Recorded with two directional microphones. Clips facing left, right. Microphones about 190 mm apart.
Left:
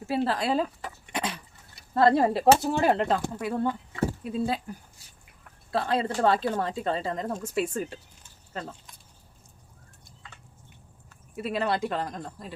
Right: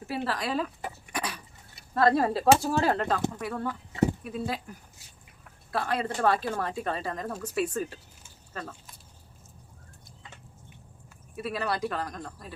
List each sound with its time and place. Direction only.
0.1 s speech: 25° left (ahead or behind)
5.7 s speech: 25° left (ahead or behind)
11.3 s speech: 25° left (ahead or behind)